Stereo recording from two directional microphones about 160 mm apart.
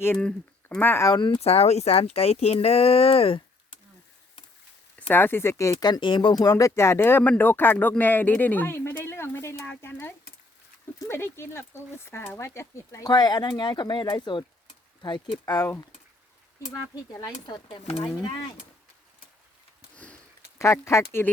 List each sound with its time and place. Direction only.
0.0 s speech: 10° left (ahead or behind)
1.1 s speech: 30° left (ahead or behind)
4.9 s speech: 15° left (ahead or behind)
16.9 s speech: 25° left (ahead or behind)
20.6 s speech: 20° left (ahead or behind)